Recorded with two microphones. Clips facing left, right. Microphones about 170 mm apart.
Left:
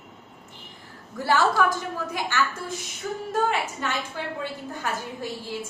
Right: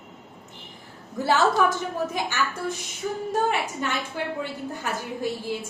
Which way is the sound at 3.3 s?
15° right (ahead or behind).